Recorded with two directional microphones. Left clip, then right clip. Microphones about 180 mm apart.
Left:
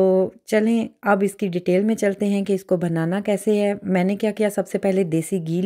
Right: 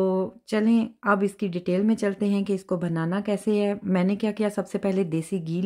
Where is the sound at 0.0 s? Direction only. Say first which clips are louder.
Left 7 dB; 15° left (ahead or behind).